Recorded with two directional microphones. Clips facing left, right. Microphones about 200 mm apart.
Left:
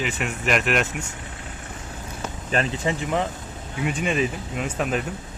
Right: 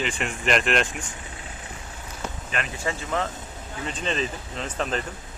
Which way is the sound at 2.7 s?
20° left (ahead or behind).